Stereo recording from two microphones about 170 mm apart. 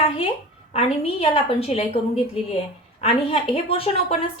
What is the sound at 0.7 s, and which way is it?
A woman's voice, 35° left (ahead or behind).